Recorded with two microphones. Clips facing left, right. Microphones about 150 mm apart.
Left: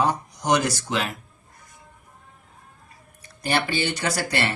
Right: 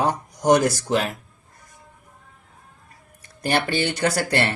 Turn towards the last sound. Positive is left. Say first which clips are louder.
# right 4 dB
turn(degrees=-50)  # may be behind; listen again after turning